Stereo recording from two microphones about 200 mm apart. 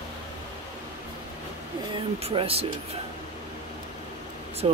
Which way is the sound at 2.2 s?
30° right (ahead or behind).